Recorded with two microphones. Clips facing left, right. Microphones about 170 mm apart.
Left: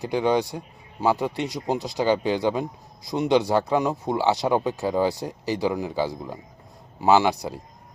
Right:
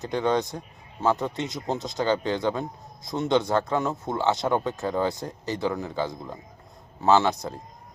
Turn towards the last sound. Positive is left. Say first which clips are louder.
# left 2 dB
turn(degrees=15)  # may be behind; listen again after turning